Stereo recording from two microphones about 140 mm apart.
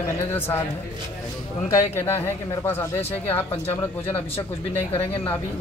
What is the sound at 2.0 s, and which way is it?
Speech, 15° left (ahead or behind).